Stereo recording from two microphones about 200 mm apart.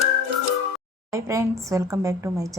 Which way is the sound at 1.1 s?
15° right (ahead or behind).